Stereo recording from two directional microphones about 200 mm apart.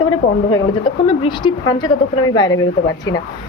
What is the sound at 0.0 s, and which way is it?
Speech, 20° left (ahead or behind).